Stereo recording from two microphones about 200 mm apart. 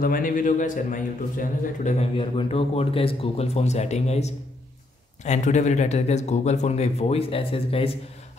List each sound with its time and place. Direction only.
0.0 s speech: 45° left (ahead or behind)
2.1 s speech: 25° left (ahead or behind)